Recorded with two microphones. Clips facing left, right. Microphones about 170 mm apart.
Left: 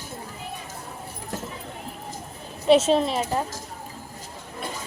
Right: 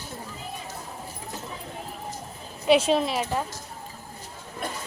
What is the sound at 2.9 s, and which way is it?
Speech, 5° right (ahead or behind).